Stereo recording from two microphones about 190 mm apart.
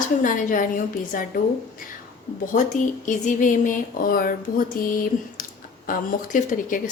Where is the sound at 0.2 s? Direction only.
45° left (ahead or behind).